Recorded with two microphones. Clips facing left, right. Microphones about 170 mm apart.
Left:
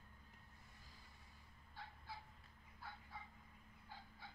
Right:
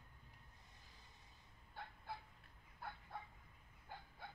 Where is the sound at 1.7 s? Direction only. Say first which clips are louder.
Right 4 dB; 55° right (ahead or behind).